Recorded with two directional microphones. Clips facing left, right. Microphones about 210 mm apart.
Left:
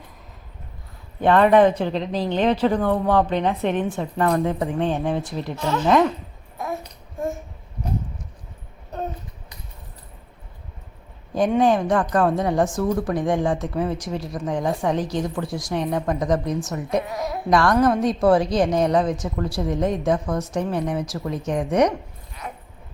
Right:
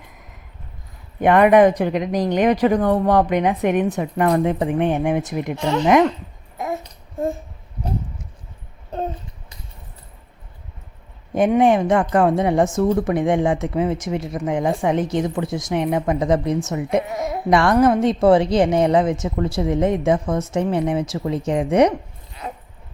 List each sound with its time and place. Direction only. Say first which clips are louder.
1.2 s a woman's voice: right 2 dB; 15° right (ahead or behind)
11.3 s a woman's voice: right 3 dB; 20° right (ahead or behind)
17.7 s a woman's voice: right 3 dB; 5° right (ahead or behind)
18.0 s a woman's voice: right 3 dB; 25° right (ahead or behind)
22.4 s dog: right 3 dB; 20° right (ahead or behind)